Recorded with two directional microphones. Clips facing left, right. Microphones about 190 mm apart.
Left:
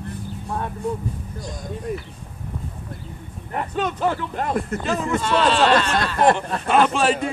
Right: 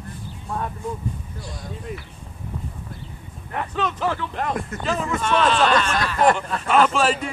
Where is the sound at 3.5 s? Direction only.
30° left (ahead or behind).